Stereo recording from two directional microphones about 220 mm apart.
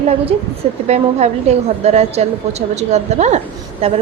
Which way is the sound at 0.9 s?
30° right (ahead or behind).